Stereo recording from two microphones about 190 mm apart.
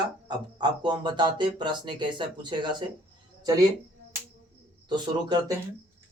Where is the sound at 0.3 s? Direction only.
25° right (ahead or behind).